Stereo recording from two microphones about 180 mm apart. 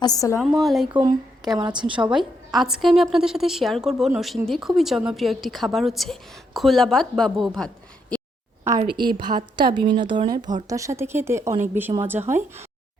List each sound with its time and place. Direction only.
0.0 s a woman's voice: 20° left (ahead or behind)
0.3 s a woman's voice: centre (ahead or behind)
1.6 s a woman's voice: 25° right (ahead or behind)
2.0 s a woman's voice: centre (ahead or behind)
8.8 s speech: 25° right (ahead or behind)